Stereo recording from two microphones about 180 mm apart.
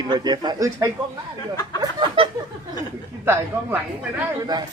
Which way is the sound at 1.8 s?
25° right (ahead or behind).